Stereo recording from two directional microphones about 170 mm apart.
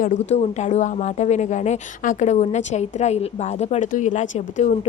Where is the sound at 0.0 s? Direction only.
45° left (ahead or behind).